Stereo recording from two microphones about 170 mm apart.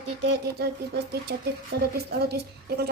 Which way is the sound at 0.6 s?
70° right (ahead or behind).